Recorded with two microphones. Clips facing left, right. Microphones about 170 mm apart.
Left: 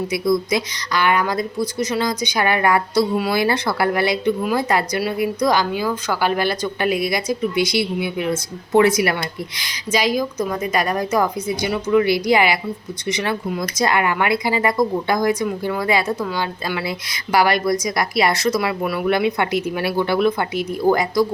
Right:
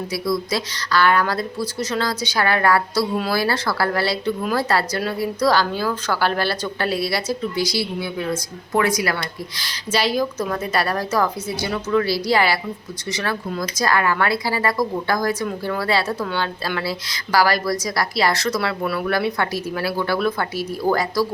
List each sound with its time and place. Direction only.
0.1 s a woman's voice: 20° left (ahead or behind)
9.6 s a woman's voice: 15° left (ahead or behind)
17.3 s a woman's voice: 20° left (ahead or behind)